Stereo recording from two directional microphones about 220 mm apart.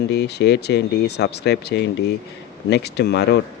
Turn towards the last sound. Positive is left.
turn(degrees=50)  # may be behind; listen again after turning